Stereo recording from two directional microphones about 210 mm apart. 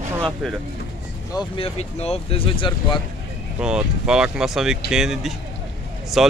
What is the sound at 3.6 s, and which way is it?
Speech, 5° right (ahead or behind).